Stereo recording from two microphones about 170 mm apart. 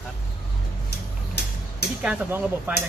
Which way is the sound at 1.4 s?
75° left (ahead or behind).